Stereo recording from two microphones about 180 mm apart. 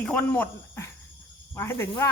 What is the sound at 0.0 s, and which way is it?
Speech, 5° left (ahead or behind).